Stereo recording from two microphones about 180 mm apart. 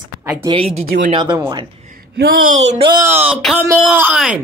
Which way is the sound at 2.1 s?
55° right (ahead or behind).